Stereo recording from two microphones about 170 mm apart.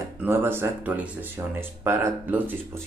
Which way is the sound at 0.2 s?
15° right (ahead or behind).